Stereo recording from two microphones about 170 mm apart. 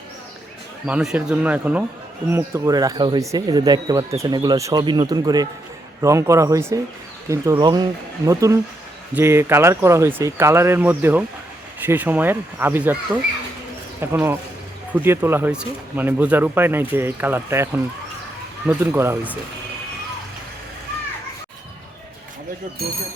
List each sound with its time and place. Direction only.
0.9 s speech: 5° right (ahead or behind)
14.0 s speech: 15° right (ahead or behind)